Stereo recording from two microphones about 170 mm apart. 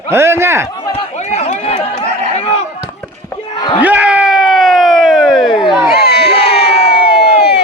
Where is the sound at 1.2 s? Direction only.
40° left (ahead or behind).